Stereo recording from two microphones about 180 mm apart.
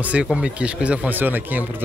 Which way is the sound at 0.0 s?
5° right (ahead or behind).